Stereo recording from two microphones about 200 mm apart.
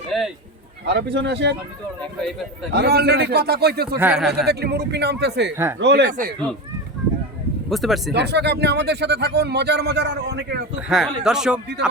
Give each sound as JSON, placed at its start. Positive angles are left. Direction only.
{"t": 0.1, "sound": "a sound", "side_deg": 0}
{"t": 0.9, "sound": "speech", "side_deg": -60}
{"t": 2.7, "sound": "a man's voice", "side_deg": -55}
{"t": 4.0, "sound": "speech", "side_deg": -5}
{"t": 4.4, "sound": "speech", "side_deg": -55}
{"t": 6.1, "sound": "a man's voice", "side_deg": -40}
{"t": 7.7, "sound": "speech", "side_deg": 0}
{"t": 8.1, "sound": "speech", "side_deg": -55}
{"t": 10.8, "sound": "speech", "side_deg": 0}